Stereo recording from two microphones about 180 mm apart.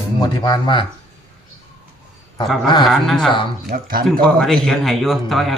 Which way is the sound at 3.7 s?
55° right (ahead or behind).